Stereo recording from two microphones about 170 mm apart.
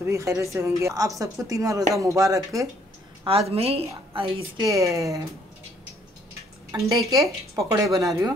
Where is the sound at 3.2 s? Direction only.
35° right (ahead or behind).